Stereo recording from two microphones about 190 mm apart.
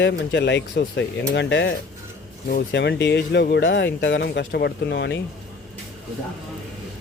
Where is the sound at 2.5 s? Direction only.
55° left (ahead or behind).